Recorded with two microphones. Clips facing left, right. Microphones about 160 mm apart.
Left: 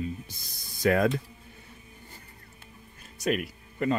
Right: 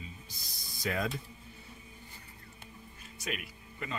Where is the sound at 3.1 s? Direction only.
45° left (ahead or behind).